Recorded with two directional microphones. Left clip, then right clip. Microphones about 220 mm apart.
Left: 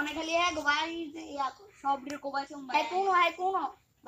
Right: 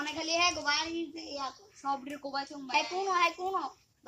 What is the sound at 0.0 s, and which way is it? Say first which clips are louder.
A woman's voice: even; centre (ahead or behind).